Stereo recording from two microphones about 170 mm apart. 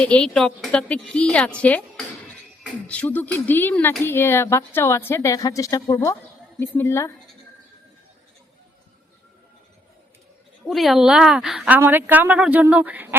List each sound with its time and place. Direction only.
0.0 s a woman's voice: 5° left (ahead or behind)
2.8 s speech: 10° left (ahead or behind)
10.7 s a woman's voice: centre (ahead or behind)